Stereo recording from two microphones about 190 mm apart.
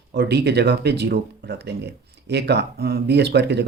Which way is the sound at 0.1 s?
60° right (ahead or behind).